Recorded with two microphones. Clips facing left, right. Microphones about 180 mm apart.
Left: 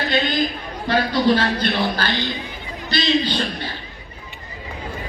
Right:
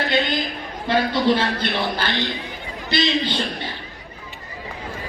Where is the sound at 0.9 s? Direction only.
25° right (ahead or behind).